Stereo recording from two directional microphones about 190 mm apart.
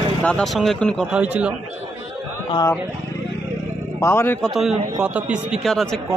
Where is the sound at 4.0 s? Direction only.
15° left (ahead or behind).